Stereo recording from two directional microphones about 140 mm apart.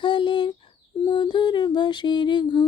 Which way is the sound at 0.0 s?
35° left (ahead or behind).